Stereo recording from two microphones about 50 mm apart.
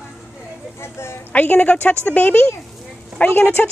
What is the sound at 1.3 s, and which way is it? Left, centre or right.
A woman's voice, left.